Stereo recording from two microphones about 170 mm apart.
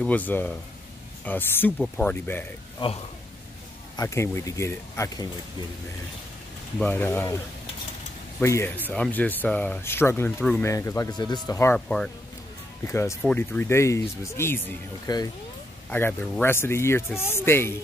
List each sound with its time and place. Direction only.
0.0 s speech: 10° left (ahead or behind)
3.9 s speech: 20° left (ahead or behind)
6.8 s speech: 10° left (ahead or behind)
8.4 s speech: 15° left (ahead or behind)
12.8 s speech: 15° left (ahead or behind)